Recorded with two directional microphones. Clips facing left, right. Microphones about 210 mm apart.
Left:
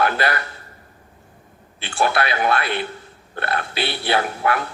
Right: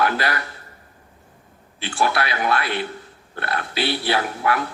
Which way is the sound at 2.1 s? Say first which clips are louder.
Left 2 dB; 55° left (ahead or behind).